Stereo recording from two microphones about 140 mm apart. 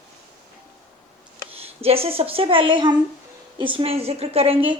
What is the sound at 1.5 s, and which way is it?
Speech, 45° right (ahead or behind).